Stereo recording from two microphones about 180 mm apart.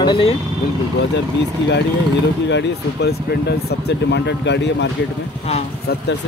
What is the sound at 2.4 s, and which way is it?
Speech, 75° left (ahead or behind).